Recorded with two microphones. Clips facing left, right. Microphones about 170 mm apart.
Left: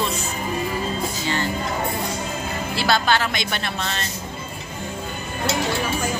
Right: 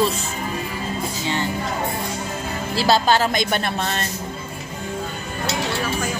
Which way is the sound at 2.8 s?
35° right (ahead or behind).